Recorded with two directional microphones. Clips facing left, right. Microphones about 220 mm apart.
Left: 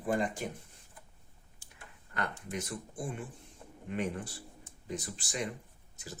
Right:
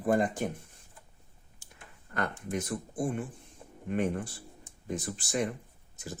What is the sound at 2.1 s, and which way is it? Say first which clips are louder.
Speech: right 4 dB; 50° right (ahead or behind).